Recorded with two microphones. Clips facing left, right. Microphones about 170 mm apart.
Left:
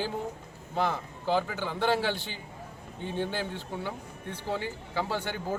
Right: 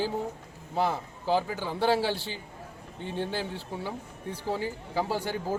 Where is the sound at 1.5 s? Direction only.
35° right (ahead or behind).